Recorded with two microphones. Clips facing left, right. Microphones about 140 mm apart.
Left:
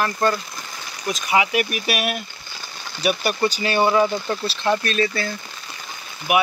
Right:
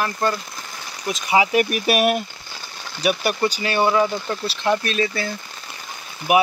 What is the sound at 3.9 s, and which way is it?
Speech, 10° left (ahead or behind).